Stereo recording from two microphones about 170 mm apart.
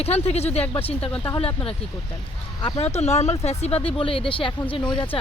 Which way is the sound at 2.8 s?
40° left (ahead or behind).